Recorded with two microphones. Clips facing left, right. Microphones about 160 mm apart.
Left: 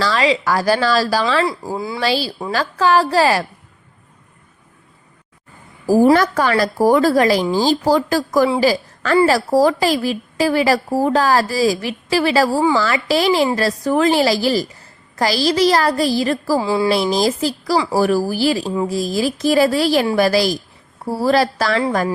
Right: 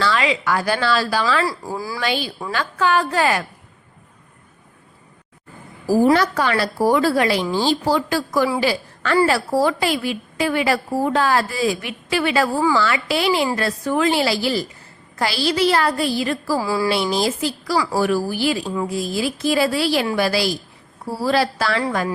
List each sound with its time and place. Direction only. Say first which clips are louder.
0.0 s a woman's voice: left 3 dB; 35° left (ahead or behind)
1.7 s a sound: left 3 dB; 25° left (ahead or behind)
2.0 s a woman's voice: left 5 dB; 35° left (ahead or behind)
6.1 s a woman's voice: left 3 dB; 45° left (ahead or behind)
16.6 s a sound: left 3 dB; 25° left (ahead or behind)
16.9 s a woman's voice: left 4 dB; 40° left (ahead or behind)